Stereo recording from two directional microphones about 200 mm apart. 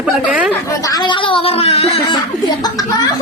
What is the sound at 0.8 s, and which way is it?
Speech, 20° left (ahead or behind).